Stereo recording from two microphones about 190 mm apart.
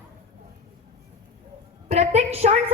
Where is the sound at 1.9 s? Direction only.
35° right (ahead or behind).